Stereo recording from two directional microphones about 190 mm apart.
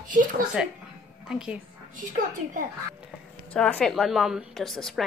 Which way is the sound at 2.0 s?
45° right (ahead or behind).